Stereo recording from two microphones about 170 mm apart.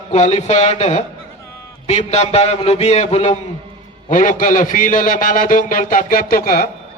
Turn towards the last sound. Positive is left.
turn(degrees=55)  # may be behind; listen again after turning